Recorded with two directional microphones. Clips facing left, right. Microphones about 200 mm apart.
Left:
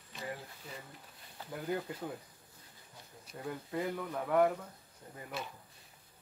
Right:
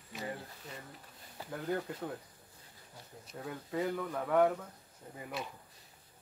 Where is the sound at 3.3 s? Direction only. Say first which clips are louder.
Left 1 dB; centre (ahead or behind).